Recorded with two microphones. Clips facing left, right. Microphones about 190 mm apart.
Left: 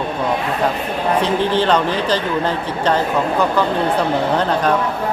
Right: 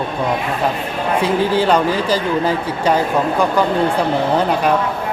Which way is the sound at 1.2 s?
10° right (ahead or behind).